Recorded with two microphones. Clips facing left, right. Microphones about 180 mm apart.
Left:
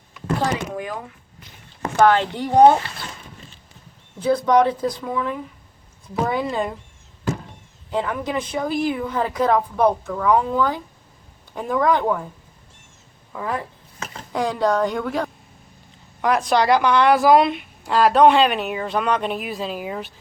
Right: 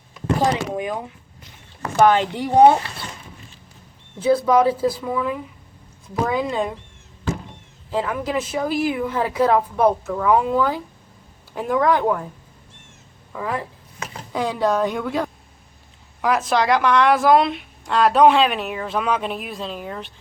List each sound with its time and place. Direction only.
0.3 s speech: 20° right (ahead or behind)
4.2 s a woman's voice: 5° right (ahead or behind)
7.9 s a woman's voice: centre (ahead or behind)
13.3 s a woman's voice: centre (ahead or behind)